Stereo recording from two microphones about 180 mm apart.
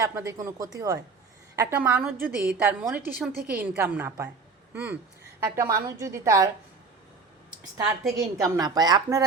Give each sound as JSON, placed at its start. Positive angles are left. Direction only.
{"t": 0.0, "sound": "a woman's voice", "side_deg": -15}
{"t": 5.4, "sound": "a woman's voice", "side_deg": -15}
{"t": 8.1, "sound": "a woman's voice", "side_deg": -20}